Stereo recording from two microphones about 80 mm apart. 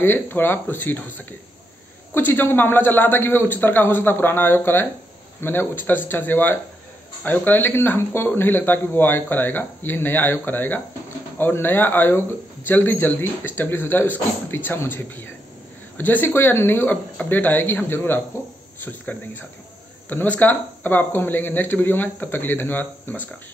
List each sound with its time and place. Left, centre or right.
0.0 s speech: left